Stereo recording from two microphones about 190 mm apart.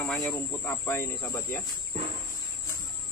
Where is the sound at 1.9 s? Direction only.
35° right (ahead or behind).